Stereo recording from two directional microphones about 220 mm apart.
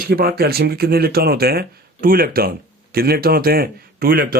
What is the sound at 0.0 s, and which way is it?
A man's voice, 45° right (ahead or behind).